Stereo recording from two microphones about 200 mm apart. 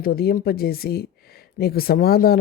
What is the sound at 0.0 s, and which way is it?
Speech, 50° left (ahead or behind).